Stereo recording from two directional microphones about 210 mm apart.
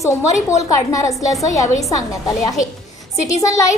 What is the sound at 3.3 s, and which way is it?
Speech, 15° left (ahead or behind).